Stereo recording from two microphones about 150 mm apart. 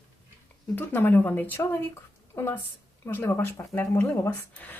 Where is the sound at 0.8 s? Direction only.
15° left (ahead or behind).